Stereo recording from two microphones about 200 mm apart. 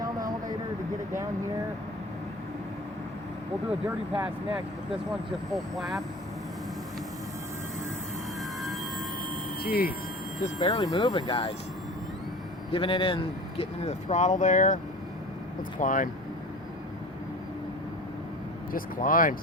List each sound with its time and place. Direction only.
0.0 s vehicle: 20° right (ahead or behind)
3.8 s speech: 5° right (ahead or behind)
5.7 s speech: centre (ahead or behind)
9.6 s speech: 50° left (ahead or behind)
10.6 s speech: 25° left (ahead or behind)
12.7 s speech: 25° left (ahead or behind)
15.8 s speech: 40° left (ahead or behind)
18.7 s speech: 45° left (ahead or behind)